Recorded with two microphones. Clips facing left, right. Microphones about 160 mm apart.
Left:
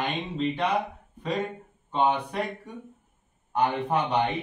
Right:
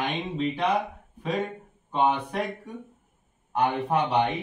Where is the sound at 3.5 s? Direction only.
10° right (ahead or behind).